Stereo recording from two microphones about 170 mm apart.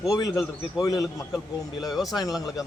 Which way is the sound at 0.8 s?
20° left (ahead or behind).